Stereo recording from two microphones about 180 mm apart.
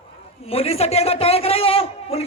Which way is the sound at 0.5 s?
35° left (ahead or behind).